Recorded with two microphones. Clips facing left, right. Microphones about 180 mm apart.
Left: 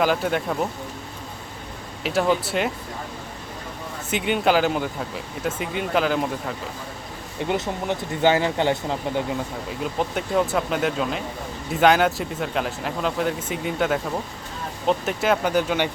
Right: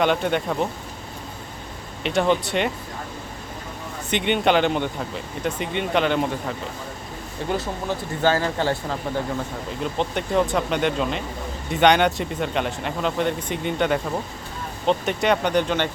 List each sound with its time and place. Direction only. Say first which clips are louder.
0.0 s speech: right 1 dB; 5° left (ahead or behind)
2.0 s speech: right 1 dB; 5° left (ahead or behind)
4.1 s speech: right 1 dB; 5° left (ahead or behind)
7.4 s speech: left 1 dB; 20° left (ahead or behind)
9.8 s speech: right 1 dB; 5° left (ahead or behind)